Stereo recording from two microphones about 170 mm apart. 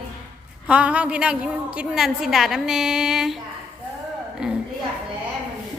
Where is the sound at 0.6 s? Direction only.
5° right (ahead or behind).